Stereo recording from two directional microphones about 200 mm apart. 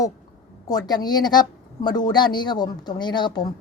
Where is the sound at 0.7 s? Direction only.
20° left (ahead or behind).